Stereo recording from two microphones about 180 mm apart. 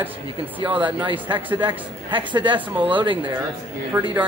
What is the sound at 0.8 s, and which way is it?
A man's voice, 30° right (ahead or behind).